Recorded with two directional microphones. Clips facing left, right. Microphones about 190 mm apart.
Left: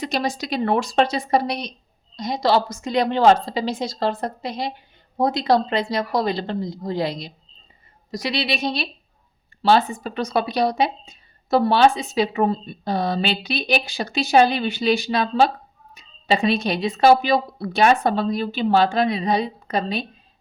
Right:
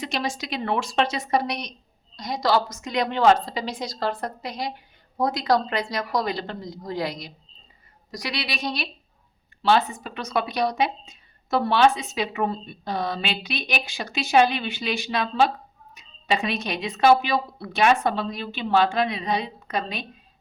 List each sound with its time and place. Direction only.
0.0 s a woman's voice: 40° left (ahead or behind)